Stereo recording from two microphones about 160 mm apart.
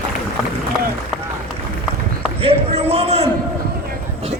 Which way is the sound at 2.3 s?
40° right (ahead or behind).